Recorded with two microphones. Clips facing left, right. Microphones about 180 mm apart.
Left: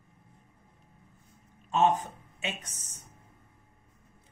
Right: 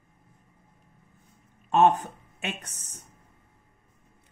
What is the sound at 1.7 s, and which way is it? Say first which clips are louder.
Speech: right 4 dB; 60° right (ahead or behind).